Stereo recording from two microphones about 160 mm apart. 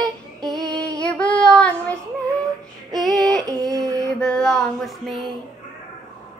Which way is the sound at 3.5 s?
25° right (ahead or behind).